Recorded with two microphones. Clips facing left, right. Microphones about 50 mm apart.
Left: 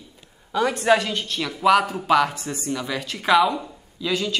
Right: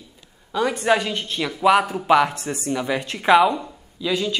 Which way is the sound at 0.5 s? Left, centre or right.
Centre.